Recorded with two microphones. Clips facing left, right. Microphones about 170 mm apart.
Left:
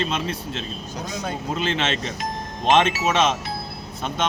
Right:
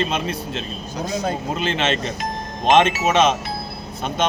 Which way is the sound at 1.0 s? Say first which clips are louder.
Right 7 dB; 40° right (ahead or behind).